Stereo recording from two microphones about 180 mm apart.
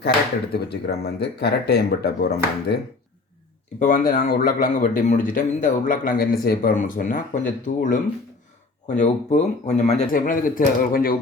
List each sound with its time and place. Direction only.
0.5 s speech: 65° left (ahead or behind)
3.8 s a man's voice: 45° left (ahead or behind)
10.1 s a man's voice: 50° left (ahead or behind)